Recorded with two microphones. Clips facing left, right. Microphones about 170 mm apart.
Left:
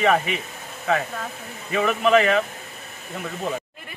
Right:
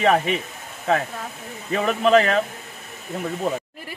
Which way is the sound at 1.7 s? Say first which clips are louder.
Right 1 dB; 35° right (ahead or behind).